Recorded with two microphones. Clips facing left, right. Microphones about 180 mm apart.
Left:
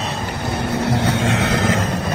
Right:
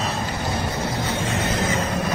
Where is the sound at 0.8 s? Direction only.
75° left (ahead or behind).